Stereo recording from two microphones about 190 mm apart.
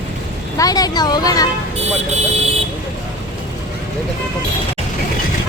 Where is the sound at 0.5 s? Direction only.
20° left (ahead or behind).